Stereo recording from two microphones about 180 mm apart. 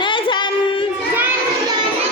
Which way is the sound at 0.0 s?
25° left (ahead or behind).